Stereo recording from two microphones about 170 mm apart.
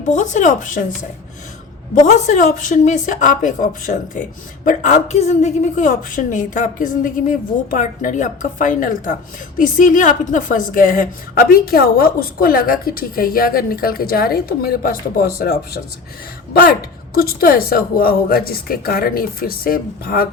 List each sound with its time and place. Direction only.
0.0 s a woman's voice: 45° left (ahead or behind)
2.0 s a woman's voice: 45° left (ahead or behind); by 15.5 s 60° left (ahead or behind)
17.2 s a woman's voice: 60° left (ahead or behind)